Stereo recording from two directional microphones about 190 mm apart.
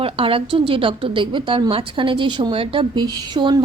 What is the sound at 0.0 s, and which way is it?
A woman's voice, 30° right (ahead or behind).